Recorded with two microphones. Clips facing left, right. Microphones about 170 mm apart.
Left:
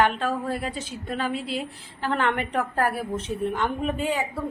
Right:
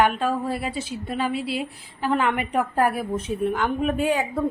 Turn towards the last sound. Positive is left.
turn(degrees=-10)  # may be behind; listen again after turning